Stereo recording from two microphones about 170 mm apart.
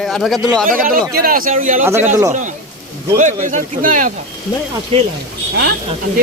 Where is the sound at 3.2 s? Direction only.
45° right (ahead or behind).